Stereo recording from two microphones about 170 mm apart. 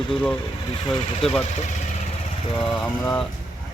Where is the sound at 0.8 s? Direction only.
30° left (ahead or behind).